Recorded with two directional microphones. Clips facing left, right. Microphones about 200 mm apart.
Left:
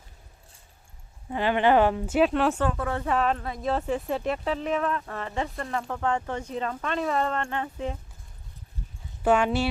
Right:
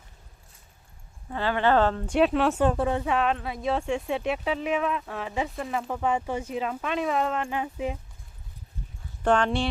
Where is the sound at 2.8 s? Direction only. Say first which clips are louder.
Right 4 dB; 20° right (ahead or behind).